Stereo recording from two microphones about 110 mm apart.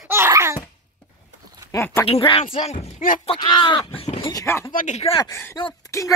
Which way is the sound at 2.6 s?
85° left.